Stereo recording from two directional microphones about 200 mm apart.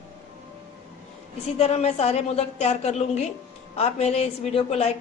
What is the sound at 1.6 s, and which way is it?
A woman's voice, 30° left (ahead or behind).